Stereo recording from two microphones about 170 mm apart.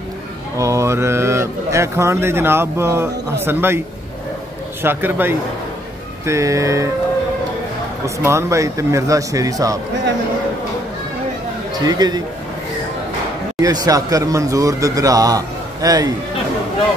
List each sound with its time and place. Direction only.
0.6 s speech: 15° right (ahead or behind)
4.8 s speech: 10° right (ahead or behind)
8.0 s speech: 15° right (ahead or behind)
11.8 s speech: 25° right (ahead or behind)
13.6 s speech: 20° right (ahead or behind)